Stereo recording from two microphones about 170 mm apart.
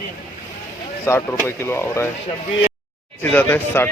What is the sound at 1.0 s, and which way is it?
Speech, 15° left (ahead or behind).